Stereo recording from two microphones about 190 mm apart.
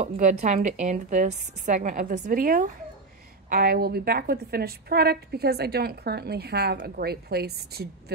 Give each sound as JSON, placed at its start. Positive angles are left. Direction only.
{"t": 0.0, "sound": "a woman's voice", "side_deg": -35}